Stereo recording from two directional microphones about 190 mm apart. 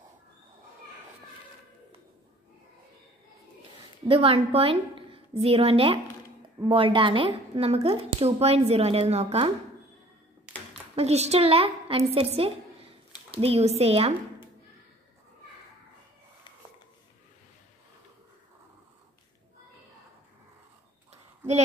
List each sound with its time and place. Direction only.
4.1 s a woman's voice: 30° right (ahead or behind)
11.0 s a woman's voice: 35° right (ahead or behind)